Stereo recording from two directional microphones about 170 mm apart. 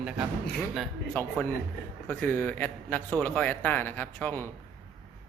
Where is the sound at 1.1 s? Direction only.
10° left (ahead or behind).